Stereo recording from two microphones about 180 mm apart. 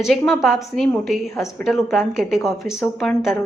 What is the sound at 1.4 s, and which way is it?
Speech, 15° left (ahead or behind).